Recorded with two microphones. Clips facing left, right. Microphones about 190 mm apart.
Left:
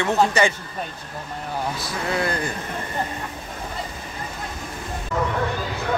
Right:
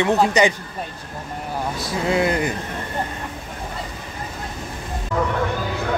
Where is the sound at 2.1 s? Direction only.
20° right (ahead or behind).